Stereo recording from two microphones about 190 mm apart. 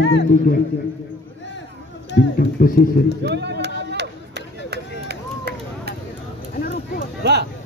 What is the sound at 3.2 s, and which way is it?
Speech, 65° right (ahead or behind).